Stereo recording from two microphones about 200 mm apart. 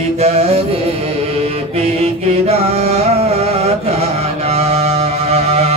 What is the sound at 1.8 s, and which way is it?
Music, 30° right (ahead or behind).